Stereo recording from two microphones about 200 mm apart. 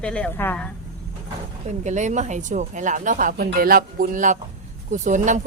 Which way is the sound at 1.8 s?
35° right (ahead or behind).